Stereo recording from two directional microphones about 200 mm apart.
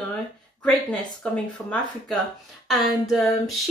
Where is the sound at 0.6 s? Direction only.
5° left (ahead or behind).